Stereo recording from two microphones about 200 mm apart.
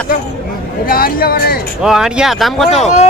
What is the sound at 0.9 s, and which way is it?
Speech, 50° left (ahead or behind).